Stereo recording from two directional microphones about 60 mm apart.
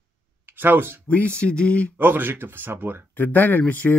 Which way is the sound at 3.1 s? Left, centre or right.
Left.